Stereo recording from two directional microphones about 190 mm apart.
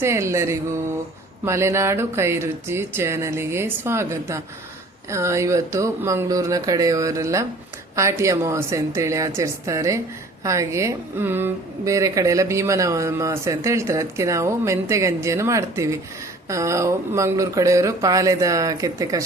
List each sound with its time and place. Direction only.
0.0 s a woman's voice: 15° right (ahead or behind)